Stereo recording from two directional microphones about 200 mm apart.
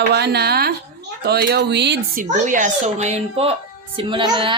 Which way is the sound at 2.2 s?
40° right (ahead or behind).